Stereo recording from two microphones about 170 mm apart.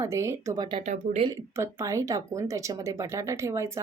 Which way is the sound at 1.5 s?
15° right (ahead or behind).